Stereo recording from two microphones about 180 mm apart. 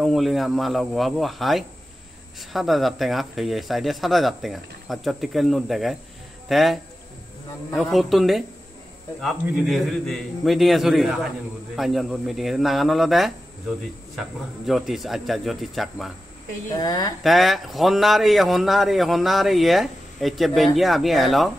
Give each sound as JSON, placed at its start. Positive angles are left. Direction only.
{"t": 0.0, "sound": "speech", "side_deg": 0}
{"t": 14.7, "sound": "speech", "side_deg": 0}
{"t": 16.7, "sound": "a woman's voice", "side_deg": 20}
{"t": 17.2, "sound": "speech", "side_deg": 0}